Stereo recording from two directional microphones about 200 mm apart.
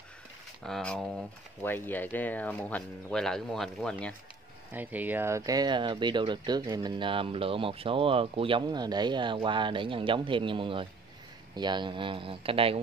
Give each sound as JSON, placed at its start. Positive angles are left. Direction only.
{"t": 0.7, "sound": "speech", "side_deg": 5}
{"t": 4.7, "sound": "speech", "side_deg": -10}